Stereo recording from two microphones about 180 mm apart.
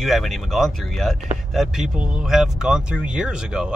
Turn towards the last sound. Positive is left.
turn(degrees=-5)  # may be behind; listen again after turning